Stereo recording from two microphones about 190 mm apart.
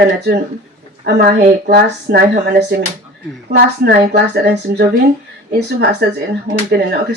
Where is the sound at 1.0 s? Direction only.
55° right (ahead or behind).